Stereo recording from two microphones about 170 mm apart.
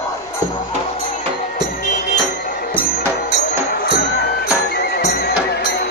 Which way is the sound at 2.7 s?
60° left (ahead or behind).